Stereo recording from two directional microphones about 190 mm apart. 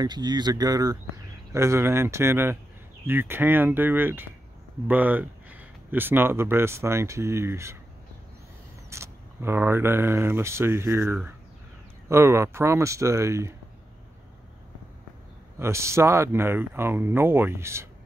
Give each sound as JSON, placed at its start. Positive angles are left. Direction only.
{"t": 0.0, "sound": "speech", "side_deg": -20}
{"t": 8.9, "sound": "speech", "side_deg": -15}
{"t": 15.6, "sound": "speech", "side_deg": -15}